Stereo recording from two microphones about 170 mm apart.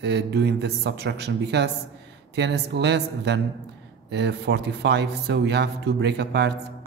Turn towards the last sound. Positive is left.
turn(degrees=-80)